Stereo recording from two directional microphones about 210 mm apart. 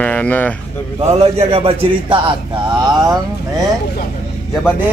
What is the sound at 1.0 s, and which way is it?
A man's voice, 30° right (ahead or behind).